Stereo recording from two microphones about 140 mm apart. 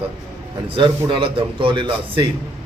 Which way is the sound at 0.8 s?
35° right (ahead or behind).